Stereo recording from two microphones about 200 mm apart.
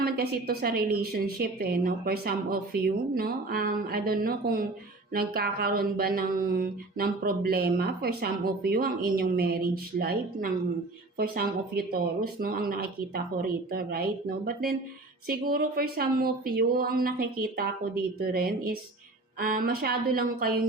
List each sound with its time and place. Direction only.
0.0 s speech: 50° right (ahead or behind)